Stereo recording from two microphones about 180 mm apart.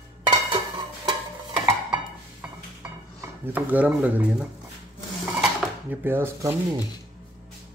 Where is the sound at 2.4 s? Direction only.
10° right (ahead or behind).